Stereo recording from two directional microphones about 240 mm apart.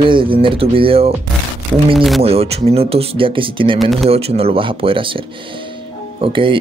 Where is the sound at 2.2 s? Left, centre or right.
Right.